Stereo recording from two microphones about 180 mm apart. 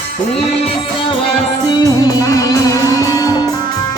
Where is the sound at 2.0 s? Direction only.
20° left (ahead or behind).